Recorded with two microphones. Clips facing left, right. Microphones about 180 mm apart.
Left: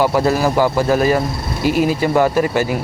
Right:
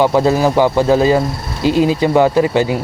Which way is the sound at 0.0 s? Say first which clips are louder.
Right 3 dB; 20° right (ahead or behind).